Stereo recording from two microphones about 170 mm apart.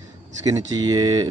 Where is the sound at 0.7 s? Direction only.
25° right (ahead or behind).